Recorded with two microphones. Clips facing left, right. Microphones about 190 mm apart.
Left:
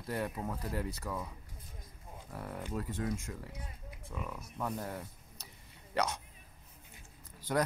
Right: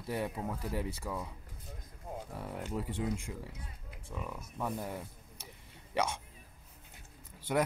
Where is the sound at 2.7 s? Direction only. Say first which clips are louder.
Right 1 dB; 15° right (ahead or behind).